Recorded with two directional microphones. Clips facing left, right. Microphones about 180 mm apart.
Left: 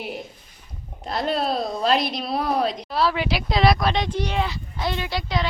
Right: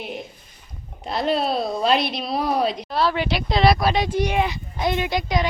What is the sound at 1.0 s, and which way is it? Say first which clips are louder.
A woman's voice: right 2 dB; centre (ahead or behind).